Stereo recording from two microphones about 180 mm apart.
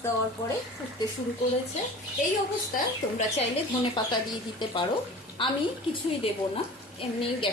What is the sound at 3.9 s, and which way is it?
Speech, 25° left (ahead or behind).